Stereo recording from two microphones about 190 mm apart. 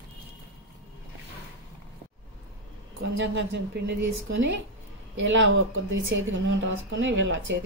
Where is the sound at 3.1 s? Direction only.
75° right (ahead or behind).